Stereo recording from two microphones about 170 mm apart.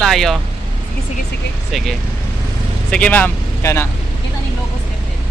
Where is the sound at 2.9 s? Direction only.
10° left (ahead or behind).